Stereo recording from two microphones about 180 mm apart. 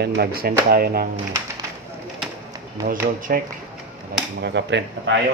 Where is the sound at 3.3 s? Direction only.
50° right (ahead or behind).